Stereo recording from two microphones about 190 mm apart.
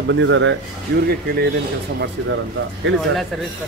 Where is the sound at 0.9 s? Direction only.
60° right (ahead or behind).